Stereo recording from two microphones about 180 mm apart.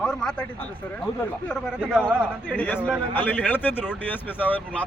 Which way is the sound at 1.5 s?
5° right (ahead or behind).